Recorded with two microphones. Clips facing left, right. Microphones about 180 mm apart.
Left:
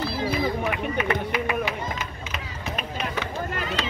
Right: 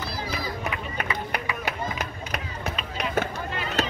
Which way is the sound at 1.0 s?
60° left (ahead or behind).